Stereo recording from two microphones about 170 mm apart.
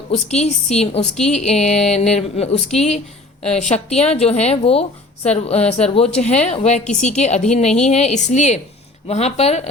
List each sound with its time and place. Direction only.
0.1 s a woman's voice: 40° left (ahead or behind)